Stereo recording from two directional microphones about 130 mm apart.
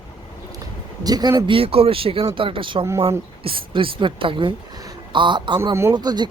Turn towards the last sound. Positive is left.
turn(degrees=-35)  # may be behind; listen again after turning